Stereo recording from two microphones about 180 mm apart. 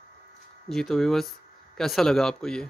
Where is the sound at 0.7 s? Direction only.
Centre (ahead or behind).